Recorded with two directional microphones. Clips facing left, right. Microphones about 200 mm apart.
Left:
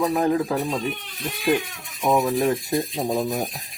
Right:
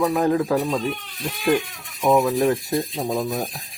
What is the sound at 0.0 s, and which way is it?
Speech, 15° left (ahead or behind).